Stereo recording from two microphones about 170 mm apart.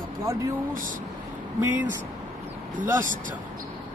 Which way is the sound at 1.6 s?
10° right (ahead or behind).